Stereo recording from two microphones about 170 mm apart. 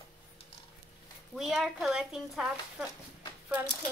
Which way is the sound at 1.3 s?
Centre (ahead or behind).